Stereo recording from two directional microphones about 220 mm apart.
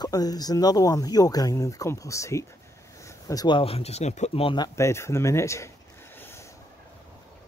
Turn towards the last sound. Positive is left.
turn(degrees=10)  # may be behind; listen again after turning